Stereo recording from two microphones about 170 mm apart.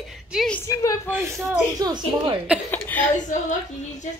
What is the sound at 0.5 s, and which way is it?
Speech, 15° left (ahead or behind).